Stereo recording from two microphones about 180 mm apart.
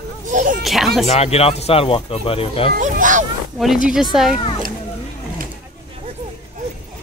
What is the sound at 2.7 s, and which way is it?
Speech, 45° right (ahead or behind).